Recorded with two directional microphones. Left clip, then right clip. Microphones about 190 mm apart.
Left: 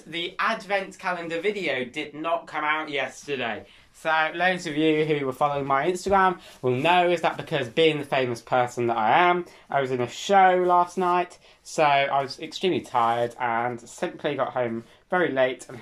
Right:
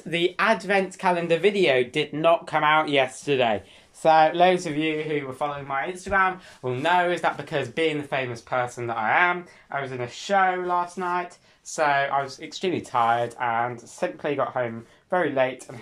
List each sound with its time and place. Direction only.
0.1 s speech: 40° right (ahead or behind)
4.0 s speech: 25° right (ahead or behind)
4.7 s speech: centre (ahead or behind)